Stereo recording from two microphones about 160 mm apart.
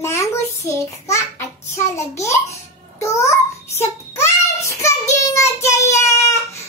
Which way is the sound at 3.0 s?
20° left (ahead or behind).